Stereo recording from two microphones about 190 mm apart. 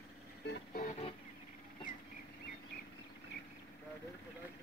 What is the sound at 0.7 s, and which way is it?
Music, 40° left (ahead or behind).